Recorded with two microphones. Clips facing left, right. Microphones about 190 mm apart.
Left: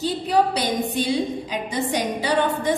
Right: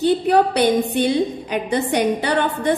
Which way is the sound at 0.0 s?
60° right (ahead or behind).